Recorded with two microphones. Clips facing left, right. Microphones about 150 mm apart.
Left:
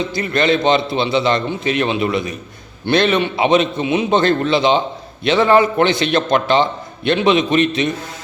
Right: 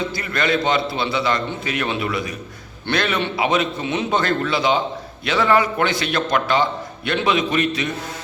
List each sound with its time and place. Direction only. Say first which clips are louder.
0.1 s a man's voice: left 5 dB; 25° left (ahead or behind)